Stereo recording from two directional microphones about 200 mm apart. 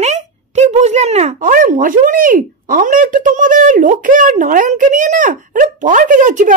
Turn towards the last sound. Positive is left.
turn(degrees=-40)  # may be behind; listen again after turning